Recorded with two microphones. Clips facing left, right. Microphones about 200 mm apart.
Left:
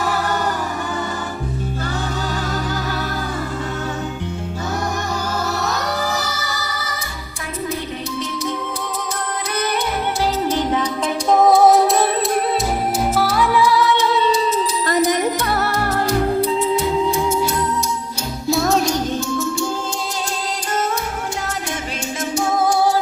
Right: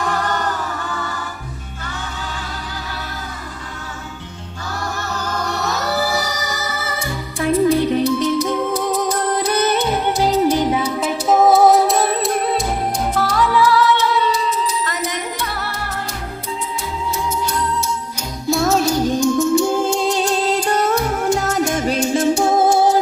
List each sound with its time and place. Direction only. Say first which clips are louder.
0.0 s music: even; 5° left (ahead or behind)
5.6 s music: right 2 dB; 5° right (ahead or behind)
9.5 s music: right 2 dB; 25° right (ahead or behind); by 14.0 s 15° left (ahead or behind)
14.8 s music: left 8 dB; 40° left (ahead or behind)
18.5 s music: right 1 dB; centre (ahead or behind); by 19.6 s 15° right (ahead or behind)
19.8 s music: right 8 dB; 60° right (ahead or behind)
20.9 s music: right 7 dB; 45° right (ahead or behind); by 23.0 s 25° right (ahead or behind)